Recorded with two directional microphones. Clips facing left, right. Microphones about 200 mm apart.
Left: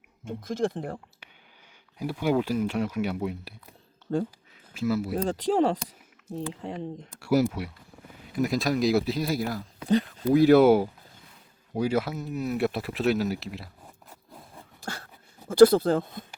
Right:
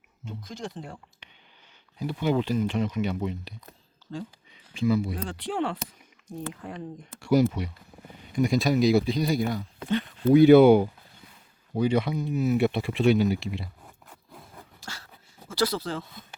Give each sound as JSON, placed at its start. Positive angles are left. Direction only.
{"t": 0.3, "sound": "speech", "side_deg": 50}
{"t": 1.2, "sound": "a sound", "side_deg": 5}
{"t": 2.0, "sound": "speech", "side_deg": 10}
{"t": 4.0, "sound": "a sound", "side_deg": 65}
{"t": 4.5, "sound": "speech", "side_deg": 5}
{"t": 5.1, "sound": "speech", "side_deg": 40}
{"t": 6.5, "sound": "speech", "side_deg": 25}
{"t": 7.1, "sound": "speech", "side_deg": 5}
{"t": 15.4, "sound": "speech", "side_deg": 55}